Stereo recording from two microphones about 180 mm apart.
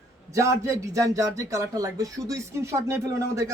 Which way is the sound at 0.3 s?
15° right (ahead or behind).